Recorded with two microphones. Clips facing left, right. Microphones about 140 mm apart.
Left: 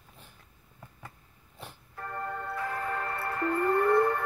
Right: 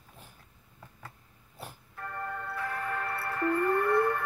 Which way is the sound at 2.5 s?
10° left (ahead or behind).